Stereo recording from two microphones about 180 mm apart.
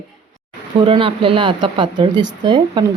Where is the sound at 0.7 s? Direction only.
30° right (ahead or behind).